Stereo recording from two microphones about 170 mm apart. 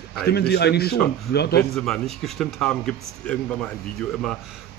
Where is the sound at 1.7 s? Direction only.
Centre (ahead or behind).